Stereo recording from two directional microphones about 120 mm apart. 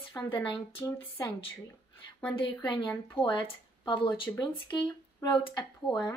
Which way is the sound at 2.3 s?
45° left (ahead or behind).